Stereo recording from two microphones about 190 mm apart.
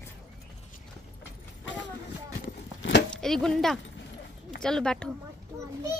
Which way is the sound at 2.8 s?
65° left (ahead or behind).